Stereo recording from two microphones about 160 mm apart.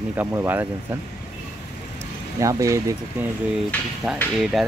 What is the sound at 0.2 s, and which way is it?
Speech, 10° right (ahead or behind).